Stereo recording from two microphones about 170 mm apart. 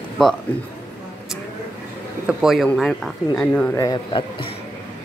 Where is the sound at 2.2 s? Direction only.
Centre (ahead or behind).